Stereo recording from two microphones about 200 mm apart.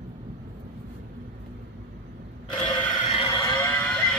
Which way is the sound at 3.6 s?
10° left (ahead or behind).